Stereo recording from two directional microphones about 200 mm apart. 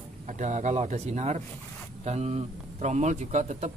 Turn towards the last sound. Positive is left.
turn(degrees=-35)  # may be behind; listen again after turning